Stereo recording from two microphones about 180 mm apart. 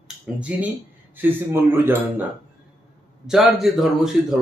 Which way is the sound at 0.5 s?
5° right (ahead or behind).